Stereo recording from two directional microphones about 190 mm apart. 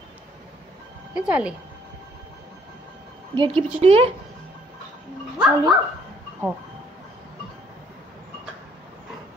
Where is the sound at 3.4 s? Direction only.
25° right (ahead or behind).